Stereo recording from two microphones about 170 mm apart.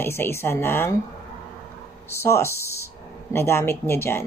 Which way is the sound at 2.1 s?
15° left (ahead or behind).